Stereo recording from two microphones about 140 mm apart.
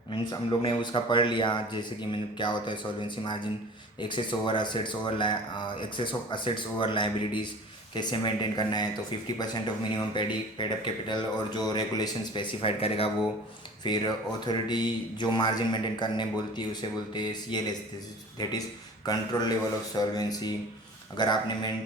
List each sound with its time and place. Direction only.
0.1 s speech: 35° left (ahead or behind)
19.0 s a man's voice: 30° left (ahead or behind)